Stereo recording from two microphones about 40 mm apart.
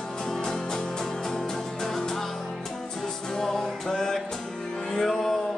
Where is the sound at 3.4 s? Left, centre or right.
Centre.